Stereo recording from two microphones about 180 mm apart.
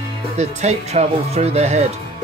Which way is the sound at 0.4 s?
40° right (ahead or behind).